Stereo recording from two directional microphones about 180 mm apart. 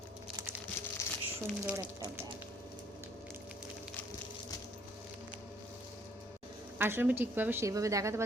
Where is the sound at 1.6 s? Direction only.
15° right (ahead or behind).